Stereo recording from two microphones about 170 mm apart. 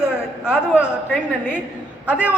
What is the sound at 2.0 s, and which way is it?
Speech, 5° right (ahead or behind).